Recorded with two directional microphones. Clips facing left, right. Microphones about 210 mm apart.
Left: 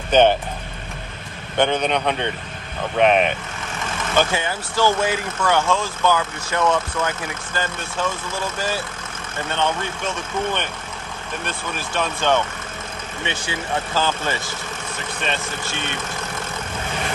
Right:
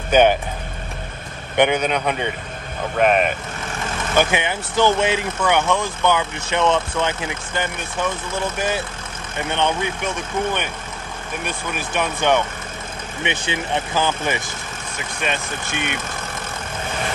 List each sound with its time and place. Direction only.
0.1 s speech: 10° right (ahead or behind)
1.6 s speech: 10° right (ahead or behind)
4.2 s speech: 20° right (ahead or behind)